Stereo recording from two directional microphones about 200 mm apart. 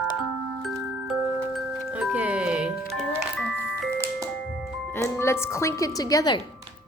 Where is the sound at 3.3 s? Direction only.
5° left (ahead or behind).